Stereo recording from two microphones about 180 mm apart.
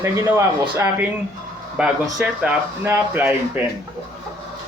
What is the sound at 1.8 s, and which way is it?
Speech, 5° right (ahead or behind).